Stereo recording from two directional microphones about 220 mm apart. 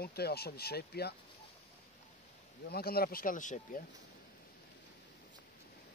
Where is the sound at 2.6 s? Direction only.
45° left (ahead or behind).